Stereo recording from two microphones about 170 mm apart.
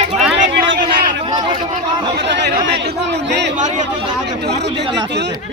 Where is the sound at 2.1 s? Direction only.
90° right.